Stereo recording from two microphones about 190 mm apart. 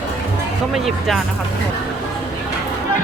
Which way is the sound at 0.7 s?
Centre (ahead or behind).